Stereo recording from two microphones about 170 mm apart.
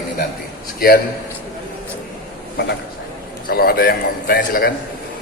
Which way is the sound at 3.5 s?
60° left (ahead or behind).